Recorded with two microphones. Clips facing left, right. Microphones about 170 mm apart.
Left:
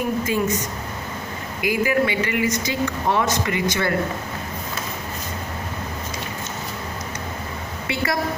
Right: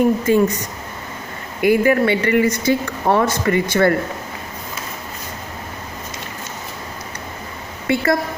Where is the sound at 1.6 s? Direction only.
50° right (ahead or behind).